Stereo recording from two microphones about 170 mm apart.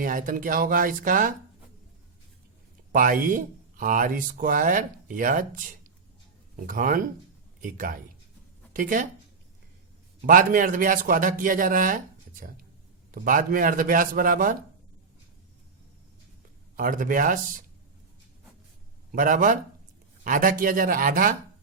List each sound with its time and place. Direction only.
0.0 s speech: 50° right (ahead or behind)
2.9 s speech: 55° right (ahead or behind)
6.6 s speech: 55° right (ahead or behind)
10.2 s speech: 50° right (ahead or behind)
13.1 s a man's voice: 55° right (ahead or behind)
16.7 s speech: 50° right (ahead or behind)
19.1 s a man's voice: 50° right (ahead or behind)